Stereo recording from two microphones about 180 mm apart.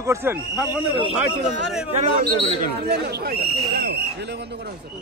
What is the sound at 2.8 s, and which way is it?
Speech, 60° right (ahead or behind).